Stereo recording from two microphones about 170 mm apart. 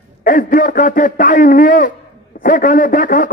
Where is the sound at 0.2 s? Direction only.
55° left (ahead or behind).